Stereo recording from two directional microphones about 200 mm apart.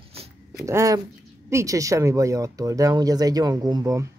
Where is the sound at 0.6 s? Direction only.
15° right (ahead or behind).